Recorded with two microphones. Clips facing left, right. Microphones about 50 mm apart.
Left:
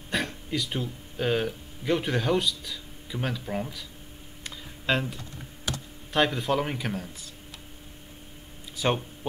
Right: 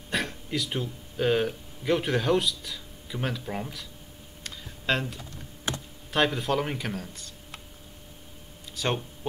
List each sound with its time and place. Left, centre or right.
0.1 s speech: centre
4.4 s music: centre
4.9 s speech: centre
5.7 s computer keyboard: right
6.1 s speech: centre
8.7 s speech: centre